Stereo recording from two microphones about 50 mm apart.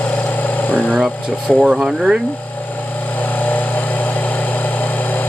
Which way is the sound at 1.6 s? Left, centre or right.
Centre.